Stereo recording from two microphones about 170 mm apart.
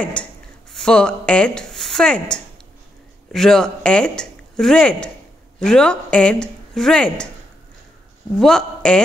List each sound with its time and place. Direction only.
0.0 s speech: 5° left (ahead or behind)
8.4 s speech: 5° left (ahead or behind)